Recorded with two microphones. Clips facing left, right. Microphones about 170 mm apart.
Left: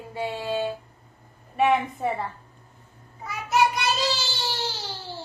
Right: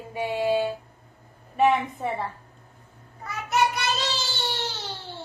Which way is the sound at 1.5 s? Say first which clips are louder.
Even; centre (ahead or behind).